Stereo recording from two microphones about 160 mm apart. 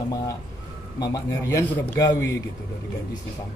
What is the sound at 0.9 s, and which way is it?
A man's voice, 20° left (ahead or behind).